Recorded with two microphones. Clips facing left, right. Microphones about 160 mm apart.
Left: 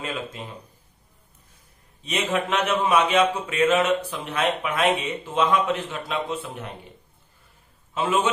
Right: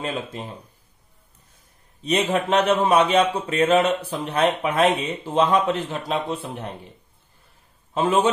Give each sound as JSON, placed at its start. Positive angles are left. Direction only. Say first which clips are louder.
{"t": 2.0, "sound": "speech", "louder": "right 4 dB", "side_deg": -35}
{"t": 7.9, "sound": "a man's voice", "louder": "right 4 dB", "side_deg": -35}